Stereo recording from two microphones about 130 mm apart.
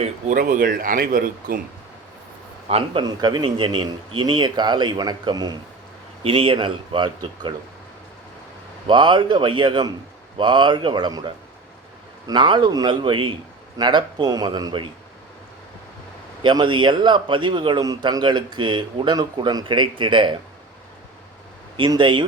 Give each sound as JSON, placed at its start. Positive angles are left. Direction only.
{"t": 0.0, "sound": "speech", "side_deg": -80}
{"t": 2.6, "sound": "a man's voice", "side_deg": -50}
{"t": 3.0, "sound": "a man's voice", "side_deg": -30}
{"t": 6.2, "sound": "a man's voice", "side_deg": -45}
{"t": 8.9, "sound": "a man's voice", "side_deg": -35}
{"t": 12.3, "sound": "a man's voice", "side_deg": -35}
{"t": 16.4, "sound": "a man's voice", "side_deg": -35}
{"t": 21.8, "sound": "a man's voice", "side_deg": -35}